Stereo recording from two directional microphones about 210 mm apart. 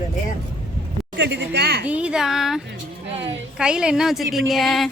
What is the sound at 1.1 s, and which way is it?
Speech, 60° right (ahead or behind).